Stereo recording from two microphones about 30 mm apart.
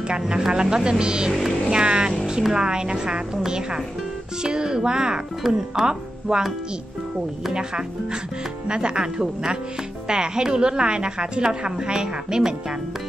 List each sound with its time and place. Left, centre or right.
0.5 s a woman's voice: right
7.5 s a woman's voice: right